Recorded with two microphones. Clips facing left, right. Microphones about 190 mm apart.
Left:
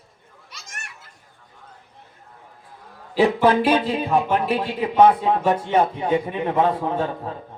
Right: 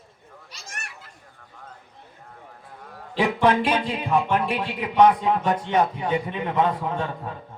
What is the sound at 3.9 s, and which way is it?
A man's voice, 30° left (ahead or behind).